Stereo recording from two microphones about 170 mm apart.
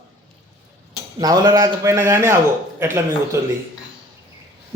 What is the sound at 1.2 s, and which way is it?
Speech, 20° right (ahead or behind).